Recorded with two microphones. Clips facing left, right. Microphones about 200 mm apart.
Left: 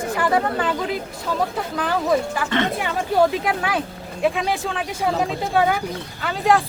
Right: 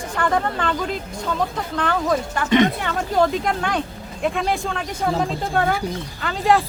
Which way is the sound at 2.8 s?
5° left (ahead or behind).